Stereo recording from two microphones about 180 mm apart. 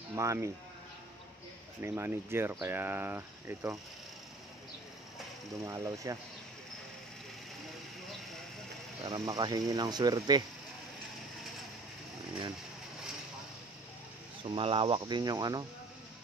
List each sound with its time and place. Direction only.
0.1 s speech: 15° right (ahead or behind)
1.8 s speech: 15° right (ahead or behind)
5.7 s speech: 15° right (ahead or behind)
9.0 s speech: 20° right (ahead or behind)
14.4 s speech: 30° right (ahead or behind)